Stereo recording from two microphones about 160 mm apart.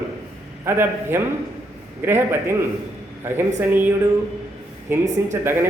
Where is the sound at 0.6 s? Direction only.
15° right (ahead or behind).